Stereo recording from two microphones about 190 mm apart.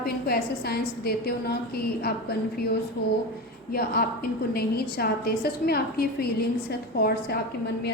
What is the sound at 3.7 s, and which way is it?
A woman's voice, 50° left (ahead or behind).